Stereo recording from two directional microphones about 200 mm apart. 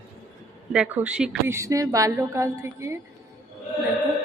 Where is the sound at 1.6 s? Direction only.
15° right (ahead or behind).